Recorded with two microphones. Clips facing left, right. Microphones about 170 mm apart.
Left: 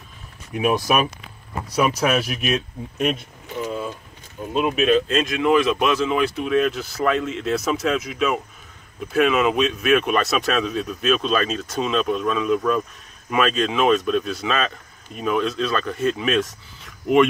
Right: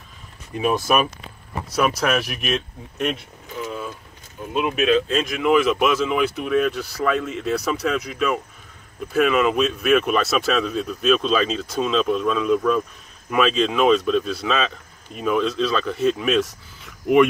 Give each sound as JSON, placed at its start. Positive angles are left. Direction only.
{"t": 0.5, "sound": "speech", "side_deg": 10}
{"t": 3.6, "sound": "vehicle", "side_deg": 20}
{"t": 4.6, "sound": "speech", "side_deg": 0}